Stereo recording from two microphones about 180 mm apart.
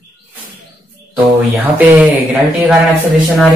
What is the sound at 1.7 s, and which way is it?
Speech, 10° right (ahead or behind).